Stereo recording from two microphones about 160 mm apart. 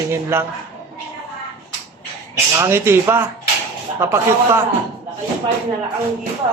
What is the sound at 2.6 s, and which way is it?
A man's voice, 15° right (ahead or behind).